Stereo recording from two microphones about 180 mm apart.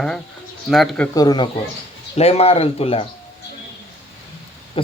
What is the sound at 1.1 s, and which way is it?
Speech, 20° left (ahead or behind).